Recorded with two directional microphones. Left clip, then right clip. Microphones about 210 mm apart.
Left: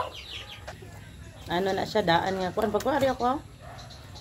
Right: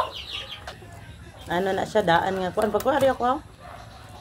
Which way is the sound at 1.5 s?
5° left (ahead or behind).